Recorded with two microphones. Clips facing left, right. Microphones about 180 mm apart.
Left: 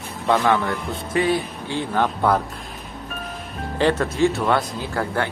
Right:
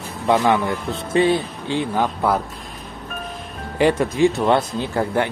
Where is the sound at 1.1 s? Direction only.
25° right (ahead or behind); by 2.4 s 10° right (ahead or behind).